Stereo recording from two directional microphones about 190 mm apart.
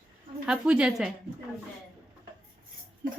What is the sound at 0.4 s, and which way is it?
Speech, 5° right (ahead or behind).